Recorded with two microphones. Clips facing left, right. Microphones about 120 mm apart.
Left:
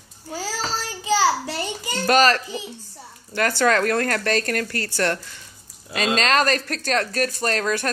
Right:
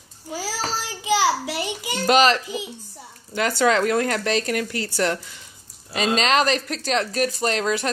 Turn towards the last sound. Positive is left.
turn(degrees=-15)  # may be behind; listen again after turning